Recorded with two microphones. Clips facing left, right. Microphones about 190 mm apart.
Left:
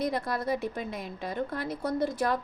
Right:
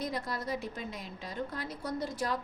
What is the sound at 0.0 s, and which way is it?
A woman's voice, 60° left (ahead or behind).